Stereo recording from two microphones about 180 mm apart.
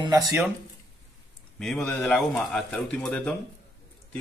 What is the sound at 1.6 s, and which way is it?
A man's voice, 5° left (ahead or behind).